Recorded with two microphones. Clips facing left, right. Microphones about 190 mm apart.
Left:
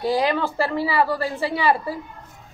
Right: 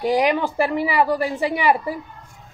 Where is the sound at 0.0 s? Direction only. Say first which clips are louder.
Right 2 dB; 15° right (ahead or behind).